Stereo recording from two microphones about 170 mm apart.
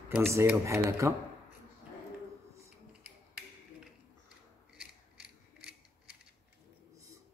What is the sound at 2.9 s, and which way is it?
Music, 5° right (ahead or behind).